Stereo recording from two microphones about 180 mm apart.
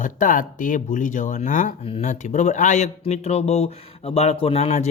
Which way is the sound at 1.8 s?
35° left (ahead or behind).